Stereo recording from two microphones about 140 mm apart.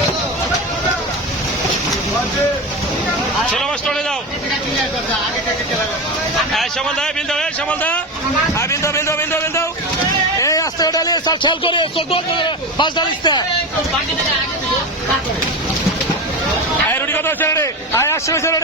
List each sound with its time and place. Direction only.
3.5 s a sound: 5° left (ahead or behind)
6.5 s a man's voice: 5° left (ahead or behind); by 13.4 s 30° left (ahead or behind)
16.9 s a man's voice: 15° left (ahead or behind)